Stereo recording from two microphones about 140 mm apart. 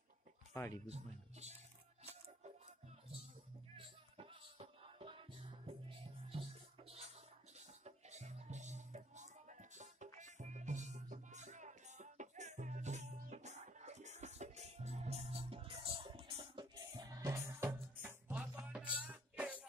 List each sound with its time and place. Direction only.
0.5 s a sound: 20° left (ahead or behind)
0.8 s speech: 50° right (ahead or behind)
3.7 s music: 40° right (ahead or behind); by 19.6 s 10° right (ahead or behind)